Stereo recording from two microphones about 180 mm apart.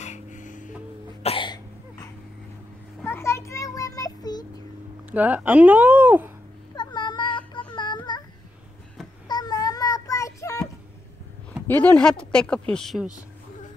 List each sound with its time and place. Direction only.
0.0 s music: 40° left (ahead or behind)
1.2 s cough: 30° left (ahead or behind)
3.0 s child singing: 15° left (ahead or behind)
5.1 s speech: 10° right (ahead or behind)
6.7 s child singing: 25° left (ahead or behind)
7.7 s a sound: 25° left (ahead or behind)
9.3 s child singing: 20° left (ahead or behind)
11.6 s speech: 10° left (ahead or behind)